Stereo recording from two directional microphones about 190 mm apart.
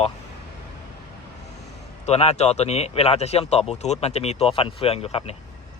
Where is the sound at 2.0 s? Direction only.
35° left (ahead or behind).